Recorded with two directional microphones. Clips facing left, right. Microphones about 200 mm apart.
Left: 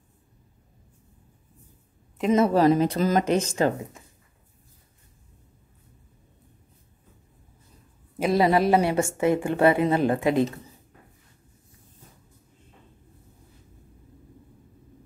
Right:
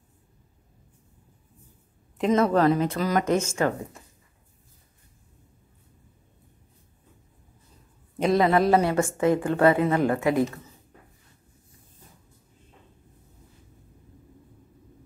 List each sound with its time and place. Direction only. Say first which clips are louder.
2.5 s speech: left 2 dB; 15° left (ahead or behind)
2.8 s speech: left 2 dB; 35° left (ahead or behind)
8.3 s a woman's voice: even; 25° left (ahead or behind)